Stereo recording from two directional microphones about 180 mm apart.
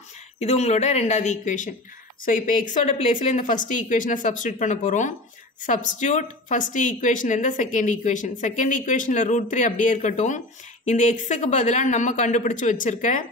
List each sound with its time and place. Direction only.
0.4 s a woman's voice: 35° left (ahead or behind)